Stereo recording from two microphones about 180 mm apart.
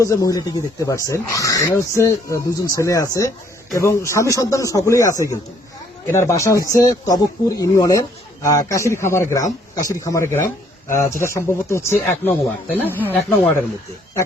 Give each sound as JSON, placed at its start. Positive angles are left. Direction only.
{"t": 0.0, "sound": "speech", "side_deg": 20}